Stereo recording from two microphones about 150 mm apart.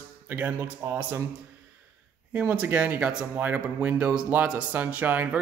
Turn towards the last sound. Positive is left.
turn(degrees=-10)  # may be behind; listen again after turning